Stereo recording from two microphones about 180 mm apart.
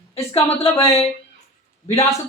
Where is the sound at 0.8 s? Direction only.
35° left (ahead or behind).